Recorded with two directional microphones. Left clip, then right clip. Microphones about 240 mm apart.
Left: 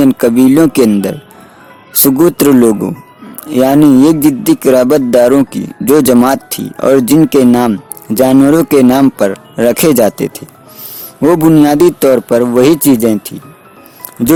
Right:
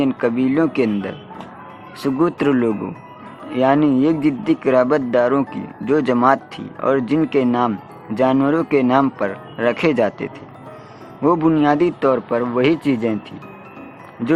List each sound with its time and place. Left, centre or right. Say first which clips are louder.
0.0 s speech: left 10 dB; left